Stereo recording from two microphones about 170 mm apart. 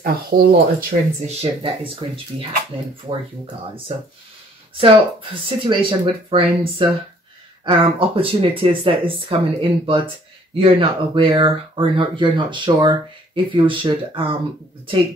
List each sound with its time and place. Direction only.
0.0 s speech: 60° right (ahead or behind)
1.2 s speech: 35° right (ahead or behind)
4.7 s speech: 30° right (ahead or behind)